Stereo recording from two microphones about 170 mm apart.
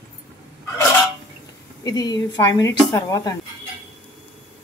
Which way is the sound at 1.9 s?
25° left (ahead or behind).